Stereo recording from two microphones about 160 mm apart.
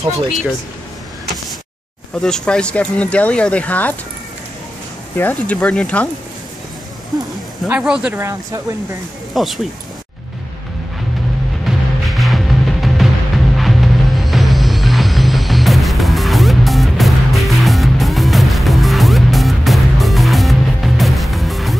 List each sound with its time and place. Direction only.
2.2 s speech: 5° left (ahead or behind)
5.1 s speech: 10° left (ahead or behind)
7.6 s speech: 5° right (ahead or behind)
8.2 s speech: 20° right (ahead or behind)
9.3 s speech: centre (ahead or behind)
11.6 s music: centre (ahead or behind)